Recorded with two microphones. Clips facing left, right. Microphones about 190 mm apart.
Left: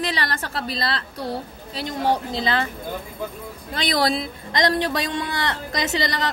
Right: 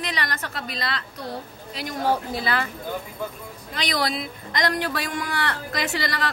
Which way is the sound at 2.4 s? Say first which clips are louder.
Left 3 dB; 25° left (ahead or behind).